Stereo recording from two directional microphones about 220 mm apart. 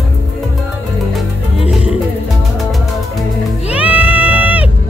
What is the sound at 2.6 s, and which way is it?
Music, centre (ahead or behind).